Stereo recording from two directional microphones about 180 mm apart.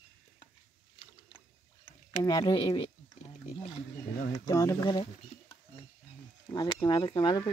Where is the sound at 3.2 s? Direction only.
35° left (ahead or behind).